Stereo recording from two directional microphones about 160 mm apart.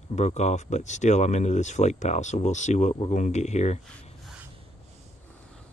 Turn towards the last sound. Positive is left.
turn(degrees=45)  # may be behind; listen again after turning